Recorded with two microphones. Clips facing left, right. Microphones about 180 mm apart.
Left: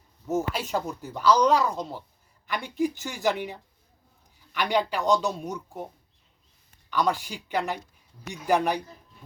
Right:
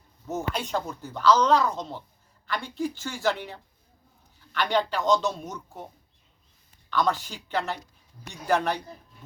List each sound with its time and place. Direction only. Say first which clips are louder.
0.3 s speech: left 2 dB; 10° left (ahead or behind)
6.9 s speech: even; 10° left (ahead or behind)